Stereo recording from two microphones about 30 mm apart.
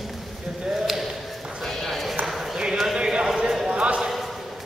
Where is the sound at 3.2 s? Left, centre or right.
Centre.